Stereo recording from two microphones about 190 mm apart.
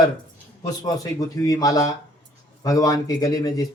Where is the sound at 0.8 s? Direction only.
20° left (ahead or behind).